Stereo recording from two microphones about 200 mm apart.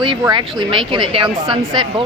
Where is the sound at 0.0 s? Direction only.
20° right (ahead or behind).